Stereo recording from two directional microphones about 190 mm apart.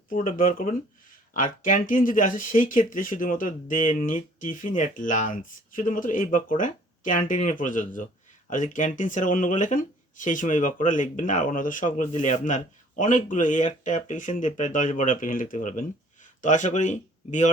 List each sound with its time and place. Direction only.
0.1 s speech: 45° left (ahead or behind)